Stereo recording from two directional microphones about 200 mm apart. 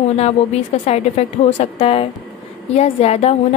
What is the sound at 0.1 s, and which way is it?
A woman's voice, 30° left (ahead or behind).